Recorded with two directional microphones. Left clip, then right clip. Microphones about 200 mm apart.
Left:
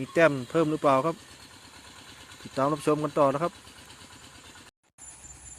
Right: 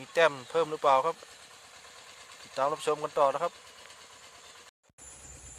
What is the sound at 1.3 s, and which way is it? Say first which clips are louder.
Vehicle: left 2 dB; 30° right (ahead or behind).